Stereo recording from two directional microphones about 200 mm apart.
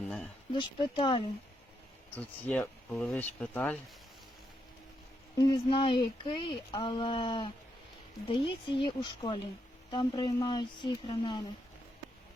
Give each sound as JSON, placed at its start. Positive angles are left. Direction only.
{"t": 0.5, "sound": "speech", "side_deg": 25}
{"t": 2.1, "sound": "speech", "side_deg": 5}
{"t": 5.4, "sound": "speech", "side_deg": 25}